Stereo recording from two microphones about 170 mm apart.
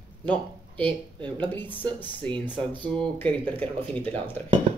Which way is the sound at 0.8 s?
30° right (ahead or behind).